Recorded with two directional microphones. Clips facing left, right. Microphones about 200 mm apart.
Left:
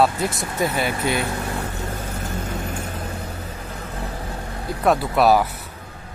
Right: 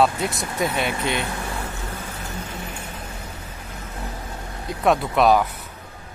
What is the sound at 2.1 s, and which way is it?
Vehicle, 45° left (ahead or behind).